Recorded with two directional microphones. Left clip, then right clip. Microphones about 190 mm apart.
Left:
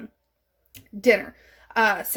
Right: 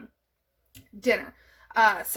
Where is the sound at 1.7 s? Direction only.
35° left (ahead or behind).